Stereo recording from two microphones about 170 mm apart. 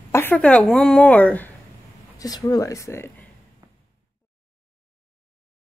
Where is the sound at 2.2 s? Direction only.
20° left (ahead or behind).